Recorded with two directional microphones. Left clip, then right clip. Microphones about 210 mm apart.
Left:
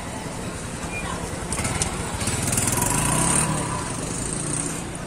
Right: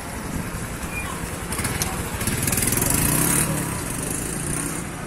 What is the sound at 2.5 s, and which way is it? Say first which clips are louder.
Lawn mower: even; 40° right (ahead or behind).